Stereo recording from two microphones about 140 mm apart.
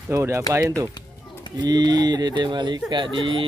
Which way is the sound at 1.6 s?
30° right (ahead or behind).